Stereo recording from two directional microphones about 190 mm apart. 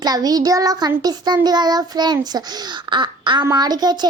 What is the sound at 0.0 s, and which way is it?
A child's voice, 20° right (ahead or behind).